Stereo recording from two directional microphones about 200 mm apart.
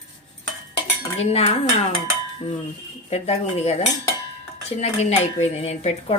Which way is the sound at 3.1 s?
30° left (ahead or behind).